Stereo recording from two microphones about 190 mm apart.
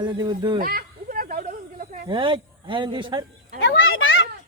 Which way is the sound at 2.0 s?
25° right (ahead or behind).